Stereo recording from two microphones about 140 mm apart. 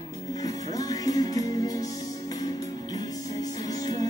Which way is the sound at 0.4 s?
25° left (ahead or behind).